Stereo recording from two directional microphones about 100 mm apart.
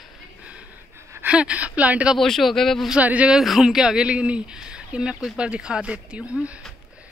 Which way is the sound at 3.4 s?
Centre (ahead or behind).